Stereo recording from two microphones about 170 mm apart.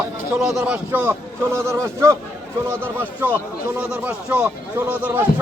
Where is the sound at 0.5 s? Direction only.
10° right (ahead or behind).